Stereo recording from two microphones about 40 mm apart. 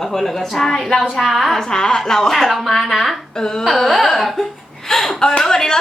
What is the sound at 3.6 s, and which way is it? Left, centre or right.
A woman's voice, centre.